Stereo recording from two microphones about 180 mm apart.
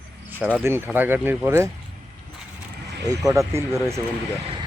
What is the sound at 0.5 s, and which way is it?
Speech, 15° right (ahead or behind).